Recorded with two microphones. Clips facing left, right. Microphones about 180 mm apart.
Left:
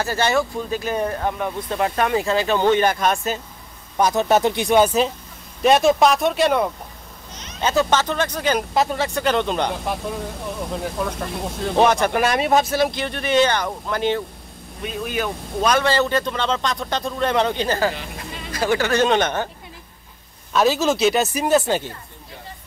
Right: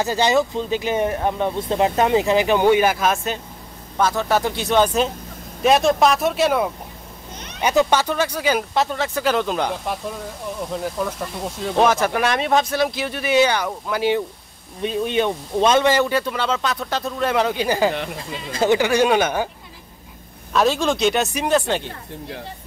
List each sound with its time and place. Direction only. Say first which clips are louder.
0.0 s speech: right 2 dB; 15° right (ahead or behind)
4.0 s speech: left 2 dB; 20° left (ahead or behind); by 6.7 s 5° right (ahead or behind)
7.6 s speech: right 1 dB; 15° right (ahead or behind)
14.8 s speech: right 5 dB; 30° right (ahead or behind); by 19.5 s 10° right (ahead or behind)
20.5 s speech: left 1 dB; centre (ahead or behind)